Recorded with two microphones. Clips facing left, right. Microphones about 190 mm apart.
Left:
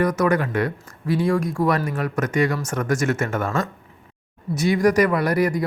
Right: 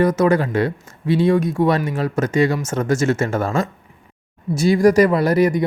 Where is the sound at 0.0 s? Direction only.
25° right (ahead or behind).